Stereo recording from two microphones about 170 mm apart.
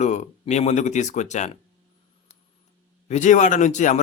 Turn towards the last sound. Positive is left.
turn(degrees=45)  # may be behind; listen again after turning